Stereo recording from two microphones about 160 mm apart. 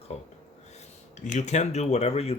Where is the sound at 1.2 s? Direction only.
45° left (ahead or behind).